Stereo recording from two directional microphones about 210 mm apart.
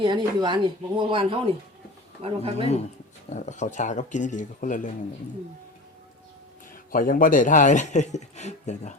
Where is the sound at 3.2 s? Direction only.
35° left (ahead or behind).